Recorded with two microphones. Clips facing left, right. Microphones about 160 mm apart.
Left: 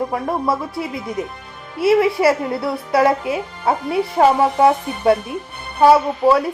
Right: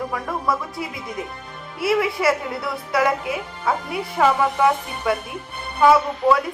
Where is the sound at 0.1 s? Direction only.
30° left (ahead or behind).